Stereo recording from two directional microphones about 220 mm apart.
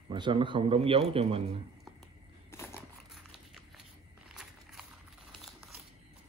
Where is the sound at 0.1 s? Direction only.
20° right (ahead or behind).